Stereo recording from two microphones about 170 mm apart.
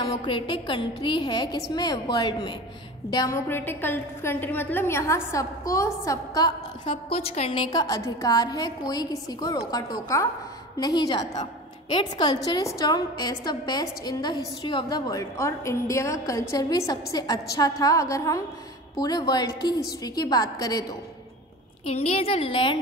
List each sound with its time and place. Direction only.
0.0 s a woman's voice: 35° left (ahead or behind)
7.2 s a woman's voice: 35° left (ahead or behind)
7.8 s a woman's voice: 20° left (ahead or behind)
21.8 s a woman's voice: 35° left (ahead or behind)